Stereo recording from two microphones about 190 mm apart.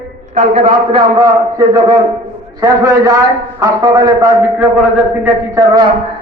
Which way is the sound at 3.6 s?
20° right (ahead or behind).